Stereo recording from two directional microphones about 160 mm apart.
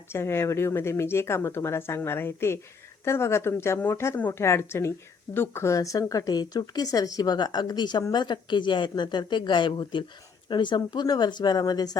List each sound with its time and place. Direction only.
0.1 s a woman's voice: 15° left (ahead or behind)